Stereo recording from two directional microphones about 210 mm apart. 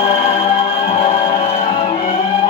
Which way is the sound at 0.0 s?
30° left (ahead or behind).